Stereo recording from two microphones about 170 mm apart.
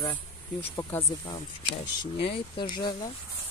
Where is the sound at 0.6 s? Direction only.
10° left (ahead or behind).